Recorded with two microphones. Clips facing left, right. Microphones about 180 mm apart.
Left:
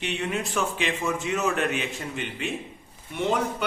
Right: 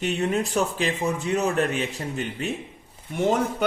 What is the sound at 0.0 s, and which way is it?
A man's voice, 40° right (ahead or behind).